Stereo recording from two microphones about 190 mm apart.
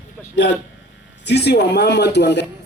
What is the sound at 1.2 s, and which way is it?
Speech, 60° left (ahead or behind).